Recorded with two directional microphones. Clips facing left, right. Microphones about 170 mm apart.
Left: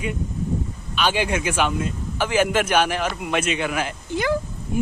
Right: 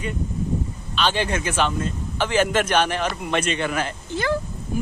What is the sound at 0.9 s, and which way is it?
Speech, 10° left (ahead or behind).